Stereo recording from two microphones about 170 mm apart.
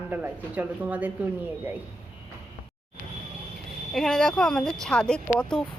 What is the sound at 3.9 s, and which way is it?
Speech, 5° left (ahead or behind).